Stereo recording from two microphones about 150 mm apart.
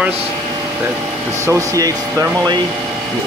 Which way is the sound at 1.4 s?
20° right (ahead or behind).